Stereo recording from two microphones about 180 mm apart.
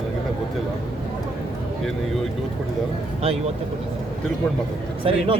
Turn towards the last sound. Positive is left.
turn(degrees=-35)  # may be behind; listen again after turning